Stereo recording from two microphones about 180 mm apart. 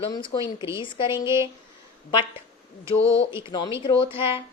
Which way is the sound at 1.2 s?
15° right (ahead or behind).